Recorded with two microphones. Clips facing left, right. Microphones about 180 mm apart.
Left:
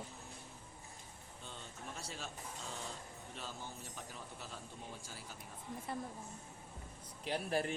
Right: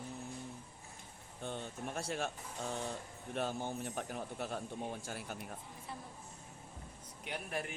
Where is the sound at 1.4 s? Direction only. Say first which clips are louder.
Right 10 dB; 60° right (ahead or behind).